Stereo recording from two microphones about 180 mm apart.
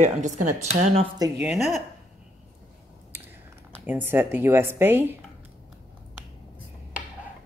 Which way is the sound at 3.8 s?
10° right (ahead or behind).